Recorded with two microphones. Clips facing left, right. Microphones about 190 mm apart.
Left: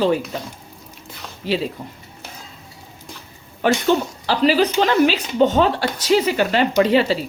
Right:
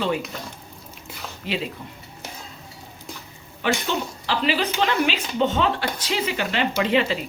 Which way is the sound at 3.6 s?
40° left (ahead or behind).